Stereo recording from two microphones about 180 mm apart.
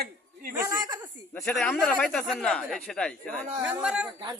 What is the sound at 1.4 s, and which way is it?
Speech, 5° left (ahead or behind).